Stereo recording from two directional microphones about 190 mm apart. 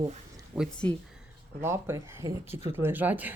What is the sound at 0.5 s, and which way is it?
Speech, 5° right (ahead or behind).